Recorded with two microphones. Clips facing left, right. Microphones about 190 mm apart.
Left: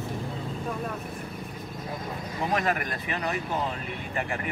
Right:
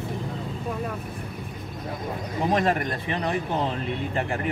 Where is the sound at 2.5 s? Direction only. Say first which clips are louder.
Right 4 dB; 30° right (ahead or behind).